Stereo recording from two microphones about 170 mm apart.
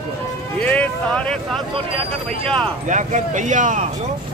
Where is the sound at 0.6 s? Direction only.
10° left (ahead or behind).